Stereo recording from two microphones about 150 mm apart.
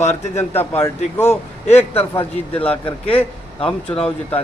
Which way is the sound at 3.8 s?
40° left (ahead or behind).